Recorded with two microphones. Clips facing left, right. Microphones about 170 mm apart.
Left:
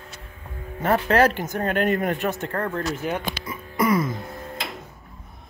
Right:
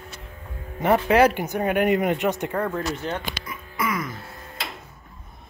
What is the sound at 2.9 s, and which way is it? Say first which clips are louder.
Speech: left 2 dB; 10° left (ahead or behind).